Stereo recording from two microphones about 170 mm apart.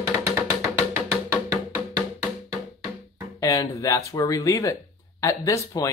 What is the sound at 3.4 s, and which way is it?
Speech, 20° left (ahead or behind).